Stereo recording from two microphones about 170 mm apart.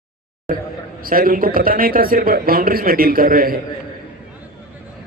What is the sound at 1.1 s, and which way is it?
Speech, 55° right (ahead or behind).